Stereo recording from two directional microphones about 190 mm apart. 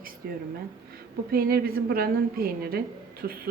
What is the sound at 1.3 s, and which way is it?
A woman's voice, 50° right (ahead or behind).